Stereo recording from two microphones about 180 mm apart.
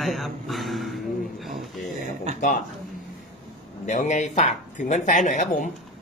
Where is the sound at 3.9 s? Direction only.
45° left (ahead or behind).